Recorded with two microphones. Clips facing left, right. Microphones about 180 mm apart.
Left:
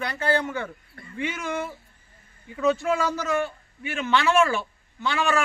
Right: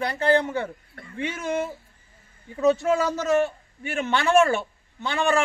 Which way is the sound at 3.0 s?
25° right (ahead or behind).